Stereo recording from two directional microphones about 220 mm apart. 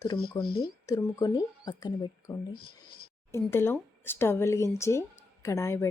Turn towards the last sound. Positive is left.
turn(degrees=15)  # may be behind; listen again after turning